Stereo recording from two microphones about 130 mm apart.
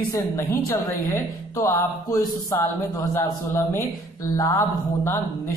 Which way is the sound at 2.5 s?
20° left (ahead or behind).